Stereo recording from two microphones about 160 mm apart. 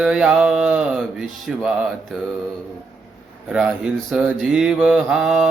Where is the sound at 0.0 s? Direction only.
5° right (ahead or behind).